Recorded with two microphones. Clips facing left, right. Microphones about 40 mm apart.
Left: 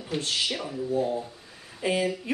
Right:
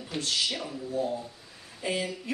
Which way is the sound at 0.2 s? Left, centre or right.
Left.